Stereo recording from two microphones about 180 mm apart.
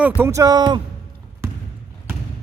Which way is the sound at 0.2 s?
15° right (ahead or behind).